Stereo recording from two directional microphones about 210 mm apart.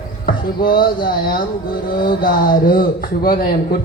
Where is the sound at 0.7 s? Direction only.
45° left (ahead or behind).